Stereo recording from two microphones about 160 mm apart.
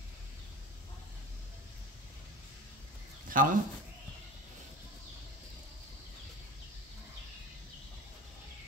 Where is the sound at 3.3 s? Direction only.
60° right (ahead or behind).